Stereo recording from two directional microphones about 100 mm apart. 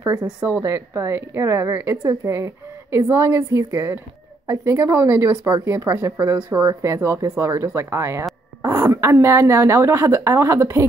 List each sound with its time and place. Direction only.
0.5 s a woman's voice: 25° right (ahead or behind)